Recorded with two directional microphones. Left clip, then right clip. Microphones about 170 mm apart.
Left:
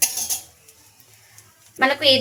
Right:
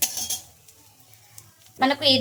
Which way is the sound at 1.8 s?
35° left (ahead or behind).